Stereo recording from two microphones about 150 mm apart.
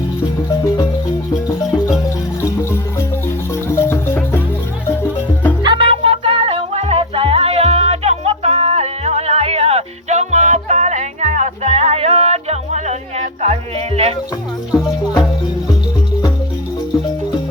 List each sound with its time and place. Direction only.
3.5 s music: 20° left (ahead or behind)
5.6 s music: 35° right (ahead or behind)